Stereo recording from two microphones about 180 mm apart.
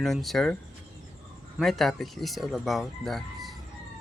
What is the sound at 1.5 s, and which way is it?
Speech, centre (ahead or behind).